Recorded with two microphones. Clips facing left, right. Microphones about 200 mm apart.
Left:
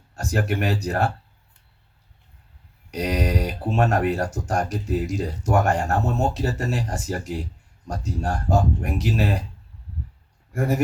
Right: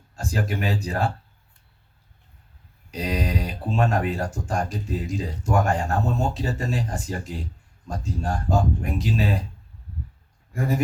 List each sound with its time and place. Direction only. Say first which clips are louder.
0.2 s speech: left 3 dB; 70° left (ahead or behind)
2.9 s speech: left 3 dB; 70° left (ahead or behind)
10.5 s speech: left 2 dB; 75° left (ahead or behind)